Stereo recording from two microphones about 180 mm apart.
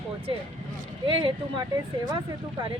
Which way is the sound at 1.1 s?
30° right (ahead or behind).